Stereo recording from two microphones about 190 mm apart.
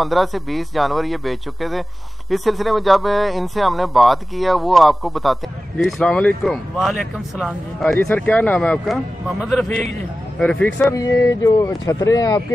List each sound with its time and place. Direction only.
0.0 s a man's voice: centre (ahead or behind); by 12.4 s 20° left (ahead or behind)